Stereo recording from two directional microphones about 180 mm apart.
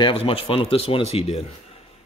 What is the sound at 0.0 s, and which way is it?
Speech, 30° left (ahead or behind).